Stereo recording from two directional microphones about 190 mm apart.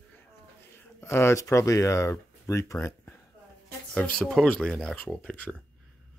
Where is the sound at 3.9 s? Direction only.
5° left (ahead or behind).